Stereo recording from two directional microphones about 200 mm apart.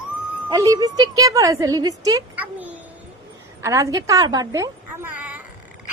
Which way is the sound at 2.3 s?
10° right (ahead or behind).